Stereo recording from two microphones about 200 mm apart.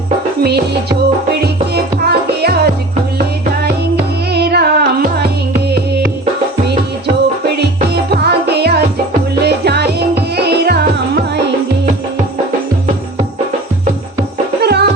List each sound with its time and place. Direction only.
0.4 s music: 55° right (ahead or behind)
4.3 s music: 55° right (ahead or behind)
7.6 s music: 55° right (ahead or behind)
14.6 s music: 55° right (ahead or behind)